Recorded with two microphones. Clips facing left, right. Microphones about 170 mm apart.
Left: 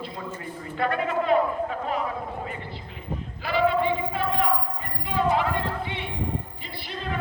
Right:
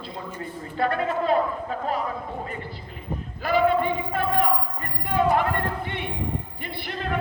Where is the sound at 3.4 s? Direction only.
50° right (ahead or behind).